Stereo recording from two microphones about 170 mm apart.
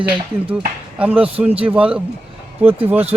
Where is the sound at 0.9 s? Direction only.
10° right (ahead or behind).